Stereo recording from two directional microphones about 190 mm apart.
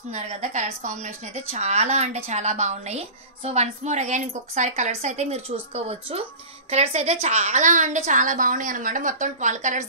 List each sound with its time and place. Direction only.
0.1 s speech: 35° right (ahead or behind)